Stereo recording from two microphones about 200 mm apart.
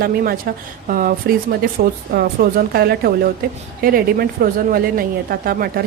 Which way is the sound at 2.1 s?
50° right (ahead or behind).